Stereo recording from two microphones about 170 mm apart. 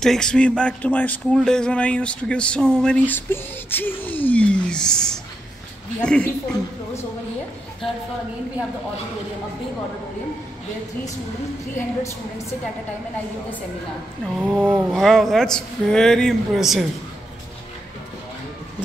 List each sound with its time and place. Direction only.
0.0 s speech: 5° left (ahead or behind)
11.7 s speech: 15° left (ahead or behind)
14.5 s a sound: 15° right (ahead or behind)
14.9 s speech: centre (ahead or behind)